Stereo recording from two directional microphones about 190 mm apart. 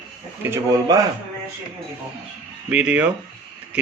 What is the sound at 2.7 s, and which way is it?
Speech, 5° right (ahead or behind).